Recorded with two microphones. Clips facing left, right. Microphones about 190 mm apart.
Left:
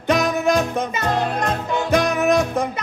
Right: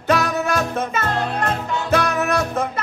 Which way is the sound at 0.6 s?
15° left (ahead or behind).